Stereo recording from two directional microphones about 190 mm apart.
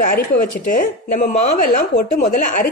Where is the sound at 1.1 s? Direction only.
40° left (ahead or behind).